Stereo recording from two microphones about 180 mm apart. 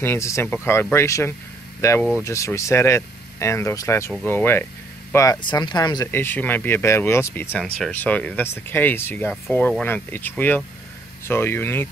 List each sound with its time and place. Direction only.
0.0 s speech: 15° left (ahead or behind)